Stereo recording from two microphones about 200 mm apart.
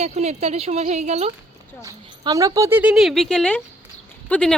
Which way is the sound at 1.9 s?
15° right (ahead or behind).